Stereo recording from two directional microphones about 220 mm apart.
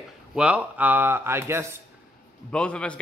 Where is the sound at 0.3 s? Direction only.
5° right (ahead or behind).